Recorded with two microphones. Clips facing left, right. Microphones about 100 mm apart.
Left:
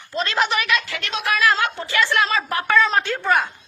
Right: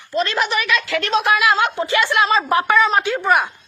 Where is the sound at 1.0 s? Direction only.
40° right (ahead or behind).